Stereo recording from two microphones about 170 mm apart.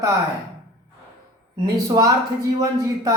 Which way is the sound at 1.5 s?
20° right (ahead or behind).